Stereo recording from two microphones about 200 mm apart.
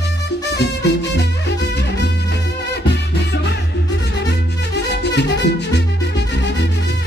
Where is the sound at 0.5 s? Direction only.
60° left (ahead or behind).